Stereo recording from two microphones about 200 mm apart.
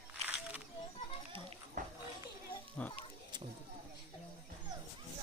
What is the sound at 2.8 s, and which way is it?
Speech, 5° left (ahead or behind).